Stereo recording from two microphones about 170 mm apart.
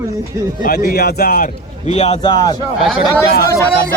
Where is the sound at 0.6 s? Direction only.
60° left (ahead or behind).